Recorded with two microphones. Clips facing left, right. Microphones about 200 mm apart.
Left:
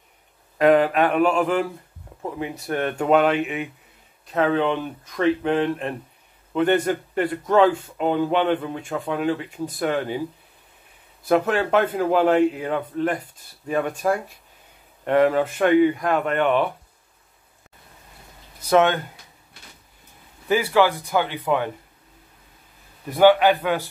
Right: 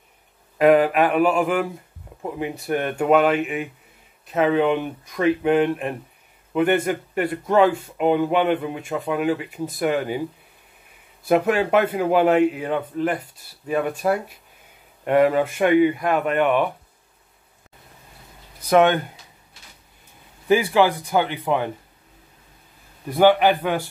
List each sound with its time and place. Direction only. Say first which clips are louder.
0.6 s speech: right 1 dB; 10° right (ahead or behind)
11.2 s speech: right 1 dB; 10° right (ahead or behind)
18.6 s speech: right 2 dB; 15° right (ahead or behind)
20.4 s speech: right 1 dB; 15° right (ahead or behind)